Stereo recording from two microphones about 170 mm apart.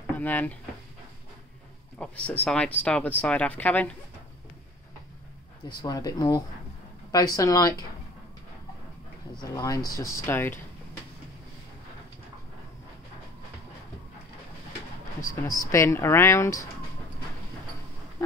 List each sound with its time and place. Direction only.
0.0 s speech: 10° left (ahead or behind)
2.0 s speech: 5° left (ahead or behind)
5.7 s speech: 25° left (ahead or behind)
9.4 s speech: 20° left (ahead or behind)
15.4 s speech: 20° left (ahead or behind)